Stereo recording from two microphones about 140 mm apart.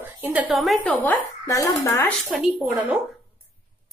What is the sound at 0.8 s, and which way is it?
Speech, 10° left (ahead or behind).